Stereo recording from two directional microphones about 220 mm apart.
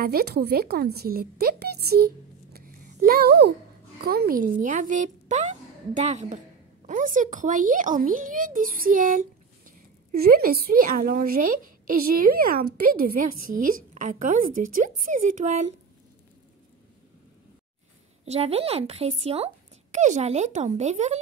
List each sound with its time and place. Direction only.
0.0 s a woman's voice: 45° right (ahead or behind)
18.2 s speech: 30° right (ahead or behind)